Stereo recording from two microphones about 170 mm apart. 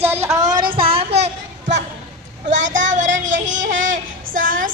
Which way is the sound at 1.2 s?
45° right (ahead or behind).